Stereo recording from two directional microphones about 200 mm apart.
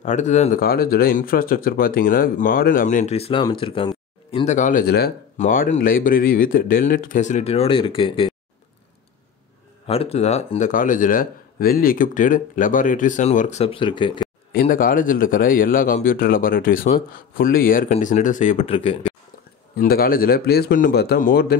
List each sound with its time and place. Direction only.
0.0 s speech: 35° left (ahead or behind); by 5.1 s 55° left (ahead or behind)
5.4 s speech: 40° left (ahead or behind)
9.8 s a man's voice: 30° left (ahead or behind)
14.5 s a man's voice: 45° left (ahead or behind); by 19.1 s 30° left (ahead or behind)
19.8 s speech: 45° left (ahead or behind)